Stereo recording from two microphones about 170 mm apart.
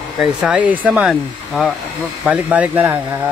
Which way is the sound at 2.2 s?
10° right (ahead or behind).